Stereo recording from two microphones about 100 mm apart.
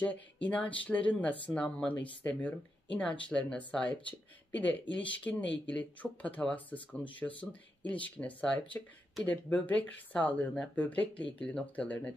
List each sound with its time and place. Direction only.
0.0 s speech: 15° left (ahead or behind)